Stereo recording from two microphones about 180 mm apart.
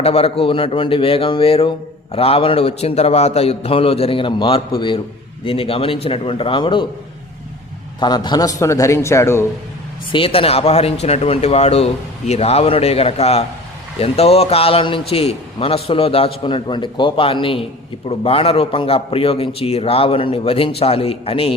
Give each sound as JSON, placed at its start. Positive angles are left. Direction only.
{"t": 0.0, "sound": "a man's voice", "side_deg": 35}
{"t": 7.9, "sound": "a man's voice", "side_deg": 25}
{"t": 10.1, "sound": "a man's voice", "side_deg": 30}